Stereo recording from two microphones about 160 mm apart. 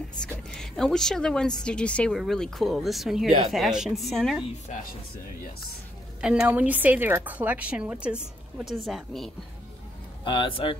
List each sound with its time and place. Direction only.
0.2 s speech: 5° left (ahead or behind)
6.2 s a woman's voice: 5° right (ahead or behind)
10.2 s speech: 30° left (ahead or behind)